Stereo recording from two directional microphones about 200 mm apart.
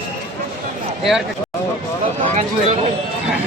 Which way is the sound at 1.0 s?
Centre (ahead or behind).